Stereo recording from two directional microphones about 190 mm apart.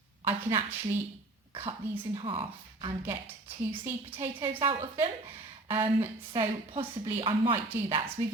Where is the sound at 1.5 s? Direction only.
30° right (ahead or behind).